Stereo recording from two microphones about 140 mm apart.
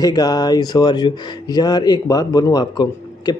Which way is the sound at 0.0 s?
30° left (ahead or behind).